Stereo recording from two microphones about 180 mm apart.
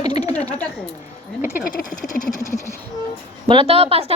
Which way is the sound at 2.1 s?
55° left (ahead or behind).